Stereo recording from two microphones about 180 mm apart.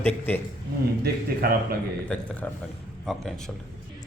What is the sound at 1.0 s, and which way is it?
Speech, 55° right (ahead or behind).